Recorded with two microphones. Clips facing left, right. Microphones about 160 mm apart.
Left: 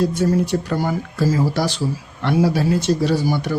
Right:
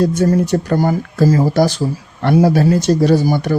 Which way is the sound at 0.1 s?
45° right (ahead or behind).